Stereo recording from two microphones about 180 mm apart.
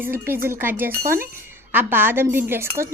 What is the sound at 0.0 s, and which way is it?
A woman's voice, 10° right (ahead or behind).